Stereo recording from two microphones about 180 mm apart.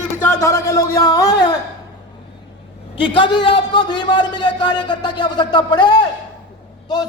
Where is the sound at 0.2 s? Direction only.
15° left (ahead or behind).